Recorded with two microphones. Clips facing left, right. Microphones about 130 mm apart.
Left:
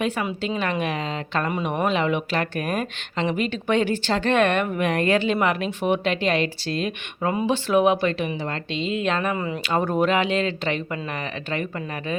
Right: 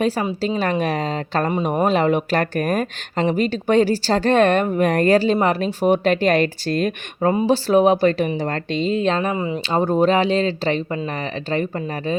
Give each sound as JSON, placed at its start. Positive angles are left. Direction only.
{"t": 0.0, "sound": "a woman's voice", "side_deg": -35}